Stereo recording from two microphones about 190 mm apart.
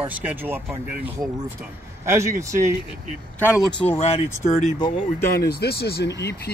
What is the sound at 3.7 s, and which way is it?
Speech, 30° left (ahead or behind).